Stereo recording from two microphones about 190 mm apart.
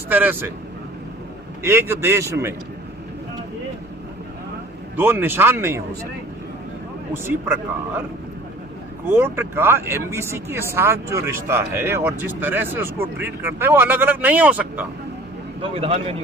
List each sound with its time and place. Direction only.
0.1 s speech: 10° right (ahead or behind)
1.6 s speech: 15° right (ahead or behind)
4.9 s speech: 10° right (ahead or behind)
7.1 s speech: 15° right (ahead or behind)
9.0 s speech: 10° right (ahead or behind)
15.7 s speech: 30° right (ahead or behind)